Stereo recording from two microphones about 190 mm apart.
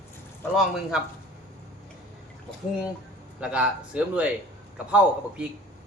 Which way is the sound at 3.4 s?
5° right (ahead or behind).